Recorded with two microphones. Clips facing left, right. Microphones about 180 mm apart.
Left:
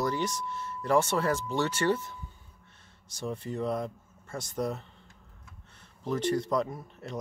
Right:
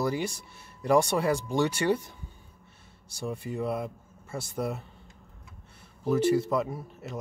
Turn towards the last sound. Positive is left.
turn(degrees=-5)  # may be behind; listen again after turning